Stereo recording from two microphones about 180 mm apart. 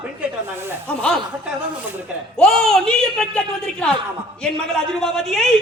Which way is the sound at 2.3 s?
5° left (ahead or behind).